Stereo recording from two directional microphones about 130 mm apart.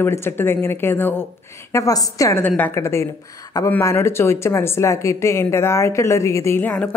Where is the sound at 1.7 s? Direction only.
25° left (ahead or behind).